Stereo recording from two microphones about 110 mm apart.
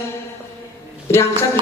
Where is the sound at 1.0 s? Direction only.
25° left (ahead or behind).